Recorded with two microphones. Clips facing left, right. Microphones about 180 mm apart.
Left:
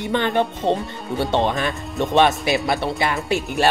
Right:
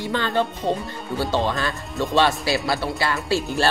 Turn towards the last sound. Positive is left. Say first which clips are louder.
# left 2 dB
turn(degrees=20)  # may be behind; listen again after turning